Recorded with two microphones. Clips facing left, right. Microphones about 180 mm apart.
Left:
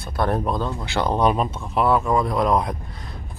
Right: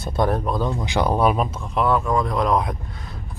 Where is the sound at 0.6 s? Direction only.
15° right (ahead or behind).